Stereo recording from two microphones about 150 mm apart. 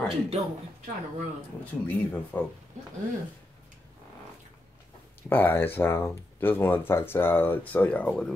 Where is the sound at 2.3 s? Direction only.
10° left (ahead or behind).